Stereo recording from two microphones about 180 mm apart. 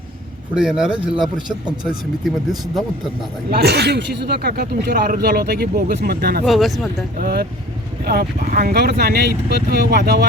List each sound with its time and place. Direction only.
0.5 s speech: 5° right (ahead or behind)
3.5 s speech: 65° right (ahead or behind)
6.4 s speech: centre (ahead or behind)
7.2 s speech: 60° right (ahead or behind)